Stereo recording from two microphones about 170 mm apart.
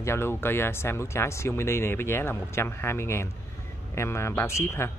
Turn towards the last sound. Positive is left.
turn(degrees=15)  # may be behind; listen again after turning